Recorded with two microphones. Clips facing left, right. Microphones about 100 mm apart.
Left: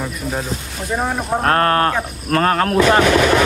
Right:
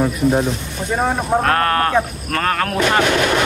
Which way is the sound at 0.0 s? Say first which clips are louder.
Right 8 dB; 20° right (ahead or behind).